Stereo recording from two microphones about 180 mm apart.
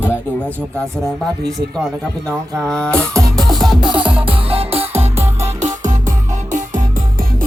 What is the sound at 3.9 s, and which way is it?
Music, 30° right (ahead or behind).